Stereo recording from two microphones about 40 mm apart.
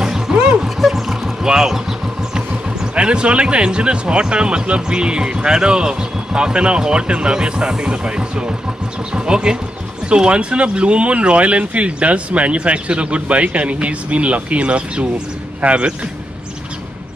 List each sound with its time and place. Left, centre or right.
0.0 s music: centre
0.7 s a sound: centre
1.4 s vehicle: centre
2.3 s speech: right